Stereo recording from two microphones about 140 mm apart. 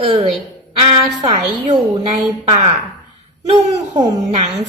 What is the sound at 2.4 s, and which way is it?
Speech, 50° right (ahead or behind).